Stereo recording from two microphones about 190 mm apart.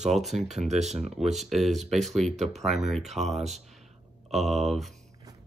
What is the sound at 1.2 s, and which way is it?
Speech, centre (ahead or behind).